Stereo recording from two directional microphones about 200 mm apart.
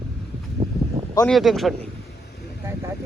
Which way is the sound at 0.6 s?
25° right (ahead or behind).